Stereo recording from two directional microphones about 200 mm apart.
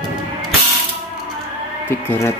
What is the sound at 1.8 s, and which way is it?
Speech, 10° left (ahead or behind).